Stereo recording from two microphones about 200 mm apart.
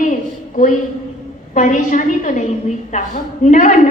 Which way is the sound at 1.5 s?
35° left (ahead or behind).